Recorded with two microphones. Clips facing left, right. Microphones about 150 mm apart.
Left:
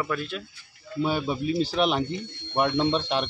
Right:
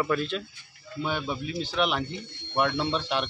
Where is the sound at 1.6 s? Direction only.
35° left (ahead or behind).